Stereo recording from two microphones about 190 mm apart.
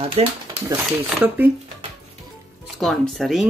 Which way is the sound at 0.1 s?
30° right (ahead or behind).